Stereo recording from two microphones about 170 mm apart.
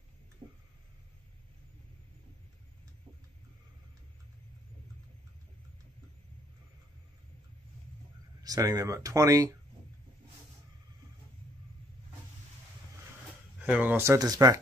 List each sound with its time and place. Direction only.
0.4 s a sound: 30° right (ahead or behind)
8.4 s speech: 20° right (ahead or behind)
13.6 s speech: 10° right (ahead or behind)